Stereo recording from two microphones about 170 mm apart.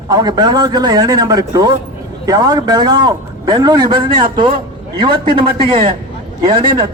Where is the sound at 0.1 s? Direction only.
25° right (ahead or behind).